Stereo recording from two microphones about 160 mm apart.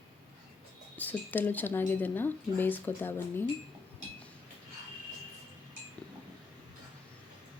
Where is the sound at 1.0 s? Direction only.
10° left (ahead or behind).